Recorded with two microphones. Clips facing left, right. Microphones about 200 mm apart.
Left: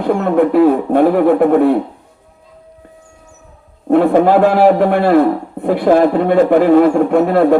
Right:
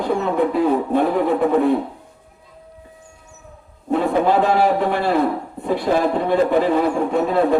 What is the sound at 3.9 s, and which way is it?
A man's voice, 60° left (ahead or behind).